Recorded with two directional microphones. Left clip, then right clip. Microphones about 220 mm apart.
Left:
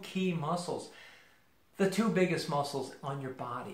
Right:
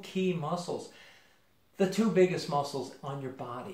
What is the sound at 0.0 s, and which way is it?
Speech, 20° left (ahead or behind).